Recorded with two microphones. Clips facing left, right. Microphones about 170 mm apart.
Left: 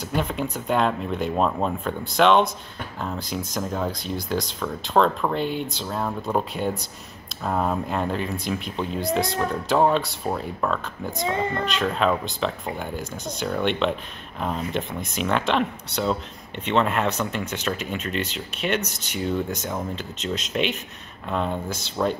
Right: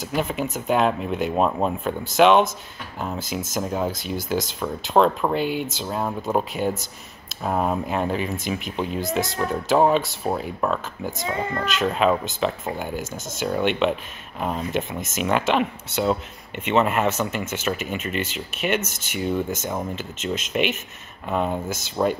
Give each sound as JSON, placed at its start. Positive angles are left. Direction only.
{"t": 0.0, "sound": "speech", "side_deg": -5}
{"t": 21.6, "sound": "speech", "side_deg": -50}